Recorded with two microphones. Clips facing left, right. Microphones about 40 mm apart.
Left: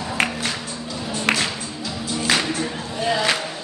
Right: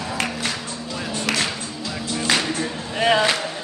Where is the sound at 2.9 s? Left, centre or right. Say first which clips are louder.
Right 5 dB; right.